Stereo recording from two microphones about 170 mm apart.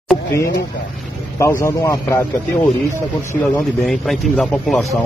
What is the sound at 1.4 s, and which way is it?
Speech, 15° left (ahead or behind).